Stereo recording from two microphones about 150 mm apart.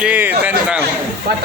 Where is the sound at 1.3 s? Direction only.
90° right.